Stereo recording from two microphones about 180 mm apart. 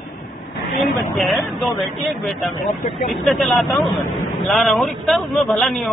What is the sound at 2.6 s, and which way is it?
Speech, 35° left (ahead or behind).